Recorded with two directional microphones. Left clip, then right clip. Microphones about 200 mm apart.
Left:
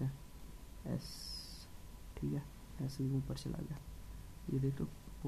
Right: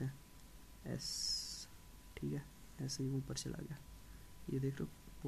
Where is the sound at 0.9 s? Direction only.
20° right (ahead or behind).